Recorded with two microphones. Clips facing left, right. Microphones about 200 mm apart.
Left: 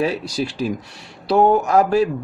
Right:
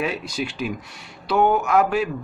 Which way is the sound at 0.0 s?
35° left (ahead or behind).